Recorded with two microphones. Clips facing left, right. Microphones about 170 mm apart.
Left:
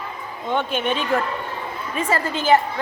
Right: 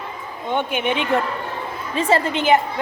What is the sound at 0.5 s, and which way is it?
A woman's voice, 15° right (ahead or behind).